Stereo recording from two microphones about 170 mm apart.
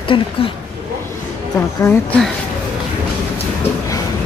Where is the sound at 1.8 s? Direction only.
10° left (ahead or behind).